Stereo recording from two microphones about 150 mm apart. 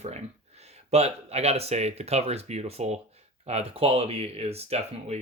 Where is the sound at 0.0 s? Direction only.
45° right (ahead or behind).